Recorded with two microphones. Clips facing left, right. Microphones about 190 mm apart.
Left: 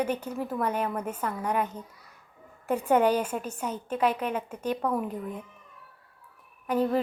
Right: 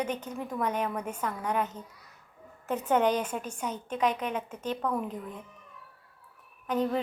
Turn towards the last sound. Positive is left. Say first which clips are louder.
# left 3 dB
turn(degrees=10)  # may be behind; listen again after turning